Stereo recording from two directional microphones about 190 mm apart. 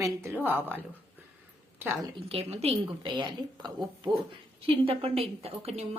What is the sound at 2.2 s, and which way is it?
A woman's voice, 30° right (ahead or behind).